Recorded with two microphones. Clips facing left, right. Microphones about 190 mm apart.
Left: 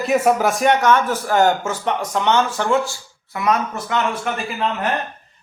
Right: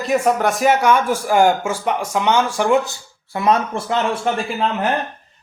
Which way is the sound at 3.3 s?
30° right (ahead or behind).